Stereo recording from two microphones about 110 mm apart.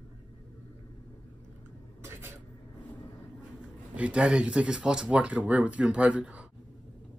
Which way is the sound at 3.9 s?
10° right (ahead or behind).